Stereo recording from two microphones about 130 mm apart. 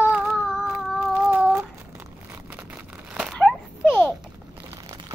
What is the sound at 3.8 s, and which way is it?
Speech, 5° right (ahead or behind).